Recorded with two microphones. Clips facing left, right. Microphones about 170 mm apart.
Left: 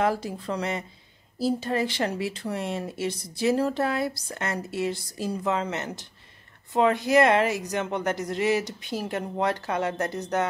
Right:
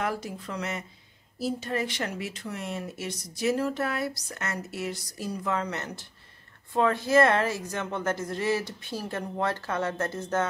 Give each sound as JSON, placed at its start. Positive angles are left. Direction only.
{"t": 0.0, "sound": "a woman's voice", "side_deg": 30}